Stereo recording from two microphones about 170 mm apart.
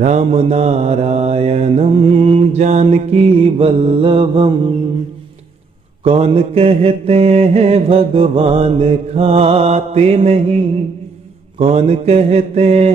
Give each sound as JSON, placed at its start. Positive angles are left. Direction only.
{"t": 0.0, "sound": "mantra", "side_deg": -40}
{"t": 6.0, "sound": "mantra", "side_deg": -35}